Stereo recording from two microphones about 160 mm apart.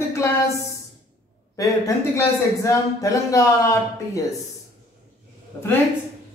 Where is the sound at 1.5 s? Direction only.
20° left (ahead or behind).